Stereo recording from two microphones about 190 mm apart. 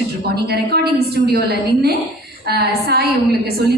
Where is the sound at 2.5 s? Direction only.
55° right (ahead or behind).